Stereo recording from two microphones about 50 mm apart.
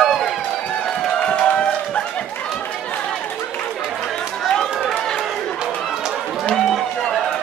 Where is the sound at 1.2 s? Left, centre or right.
Left.